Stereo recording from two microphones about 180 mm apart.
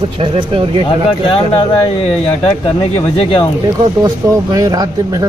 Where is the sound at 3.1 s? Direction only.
30° left (ahead or behind).